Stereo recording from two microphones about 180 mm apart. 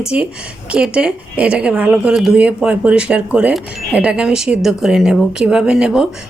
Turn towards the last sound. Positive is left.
turn(degrees=-5)  # may be behind; listen again after turning